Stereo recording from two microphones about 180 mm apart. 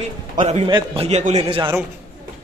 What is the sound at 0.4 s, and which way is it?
A man's voice, 35° right (ahead or behind).